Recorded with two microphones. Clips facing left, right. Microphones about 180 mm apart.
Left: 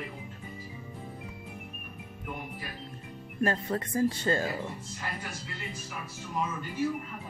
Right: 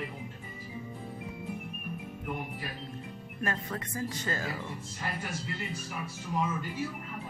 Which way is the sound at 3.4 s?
30° left (ahead or behind).